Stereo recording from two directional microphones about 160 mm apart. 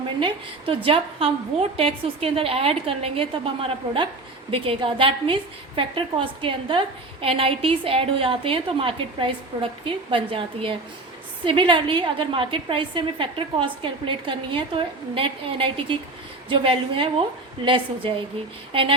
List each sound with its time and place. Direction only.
0.2 s a woman's voice: 30° right (ahead or behind)
18.7 s a woman's voice: 35° right (ahead or behind)